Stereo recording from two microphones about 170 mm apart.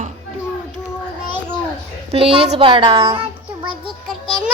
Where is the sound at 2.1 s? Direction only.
35° right (ahead or behind).